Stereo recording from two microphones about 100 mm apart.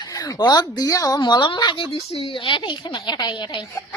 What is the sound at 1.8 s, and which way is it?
A woman's voice, 70° left (ahead or behind).